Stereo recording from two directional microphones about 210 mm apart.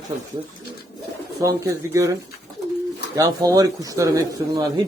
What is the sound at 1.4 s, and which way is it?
Speech, 15° right (ahead or behind).